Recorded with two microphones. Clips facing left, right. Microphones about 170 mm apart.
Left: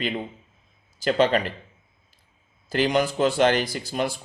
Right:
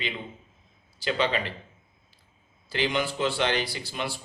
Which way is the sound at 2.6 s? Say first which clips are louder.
Left 6 dB; 45° left (ahead or behind).